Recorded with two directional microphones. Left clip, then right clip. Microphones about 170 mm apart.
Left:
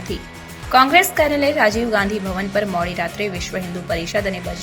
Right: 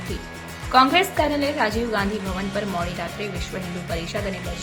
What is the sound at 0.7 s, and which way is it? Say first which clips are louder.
A woman's voice: left 4 dB; 20° left (ahead or behind).